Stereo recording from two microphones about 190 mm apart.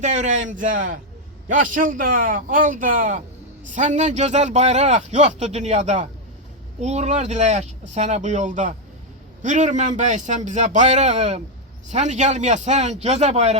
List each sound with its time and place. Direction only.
0.0 s a man's voice: 40° right (ahead or behind)